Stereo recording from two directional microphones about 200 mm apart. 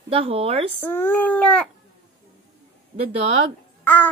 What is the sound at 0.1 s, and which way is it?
Speech, 30° right (ahead or behind).